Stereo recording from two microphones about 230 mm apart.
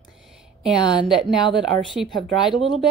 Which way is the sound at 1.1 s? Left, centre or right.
Centre.